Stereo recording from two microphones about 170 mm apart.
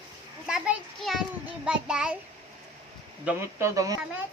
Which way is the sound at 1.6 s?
5° right (ahead or behind).